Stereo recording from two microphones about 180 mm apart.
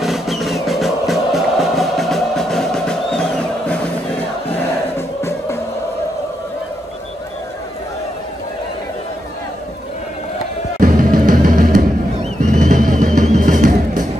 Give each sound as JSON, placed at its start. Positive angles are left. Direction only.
{"t": 0.0, "sound": "music", "side_deg": 0}
{"t": 10.8, "sound": "music", "side_deg": -50}